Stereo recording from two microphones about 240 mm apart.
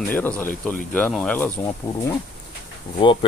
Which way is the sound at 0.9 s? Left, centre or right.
Centre.